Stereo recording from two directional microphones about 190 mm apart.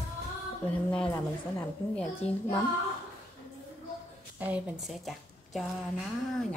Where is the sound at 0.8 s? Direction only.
10° left (ahead or behind).